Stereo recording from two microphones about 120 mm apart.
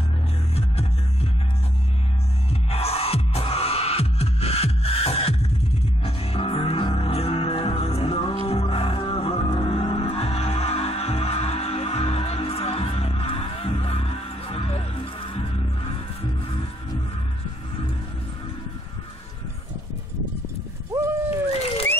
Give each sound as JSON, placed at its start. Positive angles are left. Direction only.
{"t": 0.6, "sound": "music", "side_deg": 60}
{"t": 2.7, "sound": "music", "side_deg": 55}
{"t": 20.9, "sound": "a sound", "side_deg": -25}